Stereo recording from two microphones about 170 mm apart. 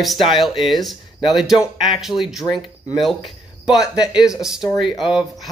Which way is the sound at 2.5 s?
30° left (ahead or behind).